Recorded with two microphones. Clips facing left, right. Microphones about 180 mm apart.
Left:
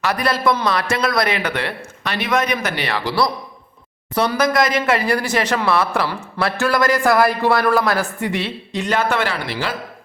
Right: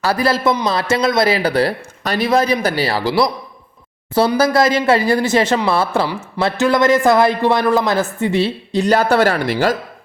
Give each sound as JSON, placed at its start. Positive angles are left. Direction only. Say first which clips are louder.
{"t": 0.0, "sound": "a man's voice", "louder": "right 3 dB", "side_deg": -30}
{"t": 3.1, "sound": "a man's voice", "louder": "right 3 dB", "side_deg": -20}
{"t": 6.1, "sound": "a man's voice", "louder": "right 3 dB", "side_deg": -15}